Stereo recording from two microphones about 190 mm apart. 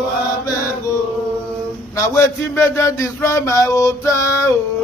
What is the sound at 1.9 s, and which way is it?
Speech, 15° left (ahead or behind).